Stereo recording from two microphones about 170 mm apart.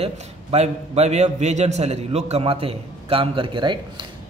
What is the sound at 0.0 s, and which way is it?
A man's voice, 40° right (ahead or behind).